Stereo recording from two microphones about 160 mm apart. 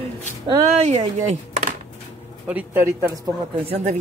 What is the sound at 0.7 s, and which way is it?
Speech, 45° right (ahead or behind).